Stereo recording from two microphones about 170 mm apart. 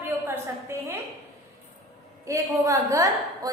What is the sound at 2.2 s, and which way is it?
A woman's voice, 20° right (ahead or behind).